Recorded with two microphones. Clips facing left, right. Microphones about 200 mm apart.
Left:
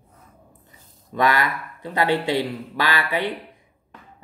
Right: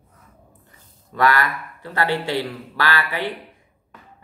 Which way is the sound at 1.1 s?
20° left (ahead or behind).